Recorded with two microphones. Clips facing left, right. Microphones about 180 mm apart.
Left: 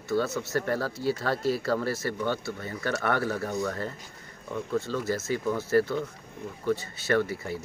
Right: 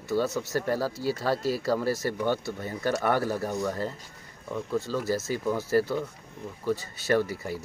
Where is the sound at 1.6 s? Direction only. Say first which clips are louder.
Right 1 dB; 10° right (ahead or behind).